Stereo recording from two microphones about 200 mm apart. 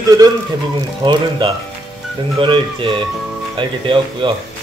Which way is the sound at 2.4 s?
25° right (ahead or behind).